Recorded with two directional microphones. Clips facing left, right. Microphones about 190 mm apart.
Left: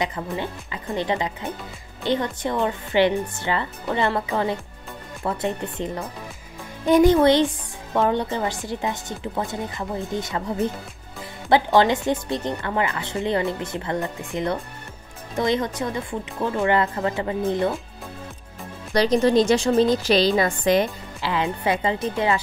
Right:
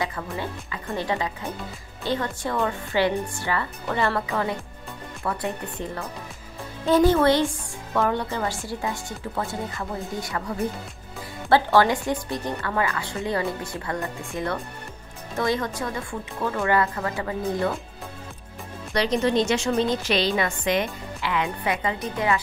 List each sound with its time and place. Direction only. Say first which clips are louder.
0.0 s a woman's voice: left 3 dB; 20° left (ahead or behind)
18.9 s a woman's voice: left 4 dB; 35° left (ahead or behind)